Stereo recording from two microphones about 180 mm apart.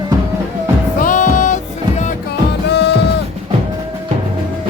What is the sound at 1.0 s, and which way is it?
Music, 45° left (ahead or behind).